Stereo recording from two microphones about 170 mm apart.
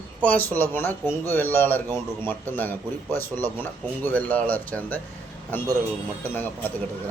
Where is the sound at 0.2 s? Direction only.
10° left (ahead or behind).